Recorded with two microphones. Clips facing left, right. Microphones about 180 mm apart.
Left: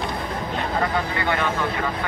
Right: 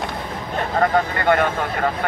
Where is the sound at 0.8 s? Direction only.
50° right (ahead or behind).